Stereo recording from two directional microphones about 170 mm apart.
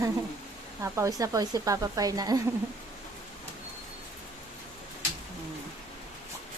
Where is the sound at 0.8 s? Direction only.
15° right (ahead or behind).